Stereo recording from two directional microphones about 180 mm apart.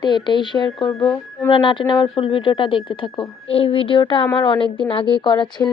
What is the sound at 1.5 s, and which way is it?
Speech, 30° left (ahead or behind).